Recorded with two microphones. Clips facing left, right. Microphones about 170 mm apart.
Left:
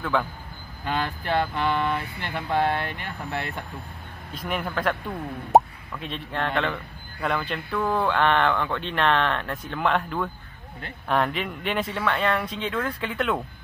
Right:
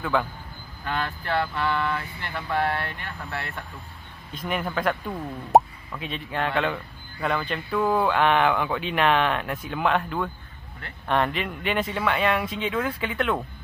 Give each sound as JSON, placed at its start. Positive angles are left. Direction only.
{"t": 0.0, "sound": "speech", "side_deg": 0}
{"t": 0.8, "sound": "speech", "side_deg": 20}
{"t": 4.3, "sound": "speech", "side_deg": 0}